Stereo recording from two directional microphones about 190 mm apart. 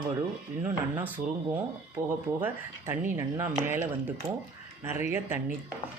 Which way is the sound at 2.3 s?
10° right (ahead or behind).